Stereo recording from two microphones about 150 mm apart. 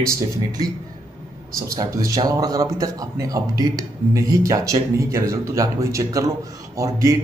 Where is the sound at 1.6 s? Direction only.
25° right (ahead or behind).